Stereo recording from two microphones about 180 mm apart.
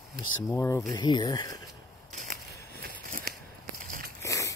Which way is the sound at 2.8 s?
55° right (ahead or behind).